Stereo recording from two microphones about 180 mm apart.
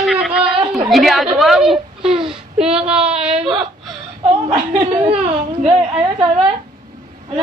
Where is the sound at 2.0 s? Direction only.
30° right (ahead or behind).